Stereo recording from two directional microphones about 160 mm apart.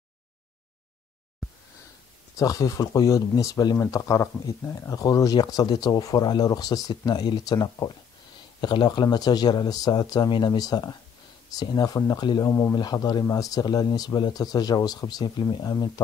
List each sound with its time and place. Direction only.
2.3 s speech: 20° left (ahead or behind)